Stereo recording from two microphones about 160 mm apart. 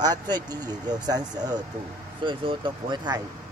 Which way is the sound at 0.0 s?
25° right (ahead or behind).